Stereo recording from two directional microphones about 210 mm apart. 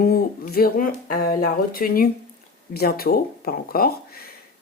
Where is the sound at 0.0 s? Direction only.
45° left (ahead or behind).